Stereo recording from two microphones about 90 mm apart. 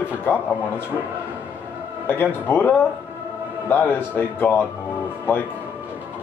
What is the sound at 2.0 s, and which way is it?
Speech, 20° left (ahead or behind).